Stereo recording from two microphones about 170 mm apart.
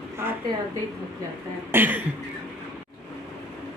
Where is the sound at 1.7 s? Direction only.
10° right (ahead or behind).